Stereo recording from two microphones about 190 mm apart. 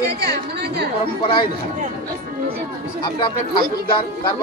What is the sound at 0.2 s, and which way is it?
Speech, 60° right (ahead or behind).